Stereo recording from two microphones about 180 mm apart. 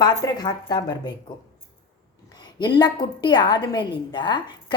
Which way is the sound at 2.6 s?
25° left (ahead or behind).